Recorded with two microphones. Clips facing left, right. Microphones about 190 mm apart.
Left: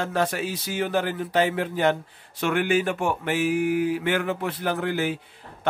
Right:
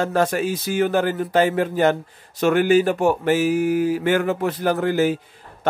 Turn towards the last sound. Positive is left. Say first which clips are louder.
# right 6 dB
turn(degrees=-40)  # may be behind; listen again after turning